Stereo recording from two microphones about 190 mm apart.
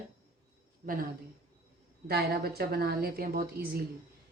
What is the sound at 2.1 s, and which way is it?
A woman's voice, 55° right (ahead or behind).